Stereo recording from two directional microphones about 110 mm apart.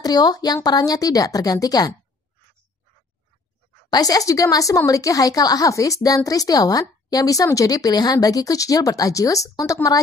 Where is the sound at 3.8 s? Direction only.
35° left (ahead or behind).